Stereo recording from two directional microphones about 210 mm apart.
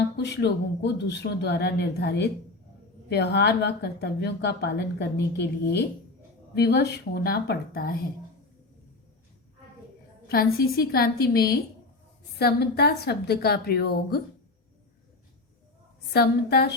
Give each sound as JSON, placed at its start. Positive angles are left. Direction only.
{"t": 0.2, "sound": "speech", "side_deg": 55}
{"t": 10.2, "sound": "speech", "side_deg": 50}
{"t": 16.1, "sound": "speech", "side_deg": 50}